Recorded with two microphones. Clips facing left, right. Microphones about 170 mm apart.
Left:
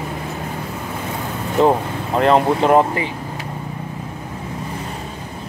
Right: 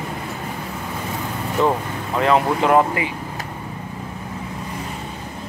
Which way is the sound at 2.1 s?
35° left (ahead or behind).